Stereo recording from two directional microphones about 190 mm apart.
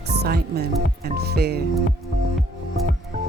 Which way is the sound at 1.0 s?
55° right (ahead or behind).